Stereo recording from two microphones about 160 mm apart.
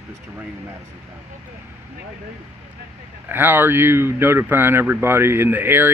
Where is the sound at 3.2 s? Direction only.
10° right (ahead or behind).